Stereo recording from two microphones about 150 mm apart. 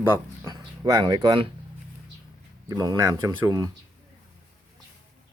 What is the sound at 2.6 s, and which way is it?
Speech, 25° right (ahead or behind).